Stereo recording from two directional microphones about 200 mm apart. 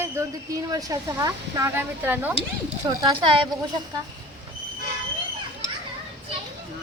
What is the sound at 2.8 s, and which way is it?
Speech, 20° right (ahead or behind).